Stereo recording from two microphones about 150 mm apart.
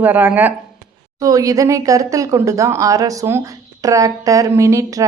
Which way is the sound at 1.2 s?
25° right (ahead or behind).